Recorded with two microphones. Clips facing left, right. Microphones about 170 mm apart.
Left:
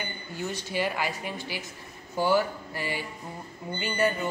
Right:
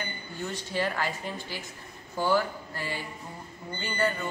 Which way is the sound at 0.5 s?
10° left (ahead or behind).